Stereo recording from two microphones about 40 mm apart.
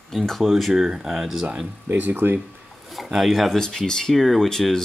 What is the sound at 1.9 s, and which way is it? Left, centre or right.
Speech, right.